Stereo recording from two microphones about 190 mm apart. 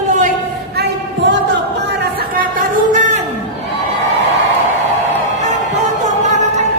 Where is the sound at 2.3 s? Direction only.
45° right (ahead or behind).